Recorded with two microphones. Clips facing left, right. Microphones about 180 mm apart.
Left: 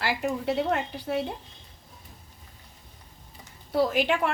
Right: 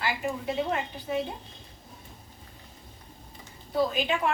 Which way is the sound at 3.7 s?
75° left (ahead or behind).